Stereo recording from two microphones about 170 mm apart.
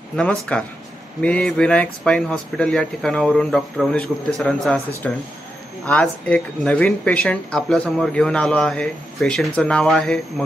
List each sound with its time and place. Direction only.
0.1 s speech: 5° left (ahead or behind)